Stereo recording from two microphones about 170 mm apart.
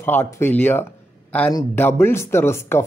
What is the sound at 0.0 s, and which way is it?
Speech, 10° left (ahead or behind).